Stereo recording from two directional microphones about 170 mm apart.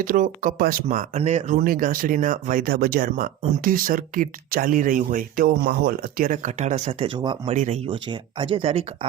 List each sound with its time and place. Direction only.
0.0 s speech: 55° right (ahead or behind)
7.1 s speech: 30° right (ahead or behind)
7.5 s speech: 45° right (ahead or behind)
7.9 s speech: 30° right (ahead or behind)